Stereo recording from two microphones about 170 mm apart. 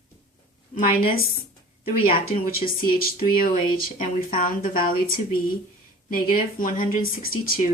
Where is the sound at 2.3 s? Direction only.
60° left (ahead or behind).